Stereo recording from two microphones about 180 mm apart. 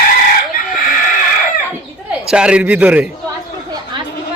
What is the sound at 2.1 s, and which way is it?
A man's voice, 5° right (ahead or behind).